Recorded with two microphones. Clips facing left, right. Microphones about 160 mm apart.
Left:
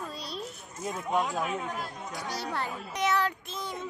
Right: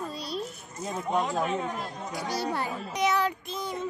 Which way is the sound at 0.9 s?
Centre (ahead or behind).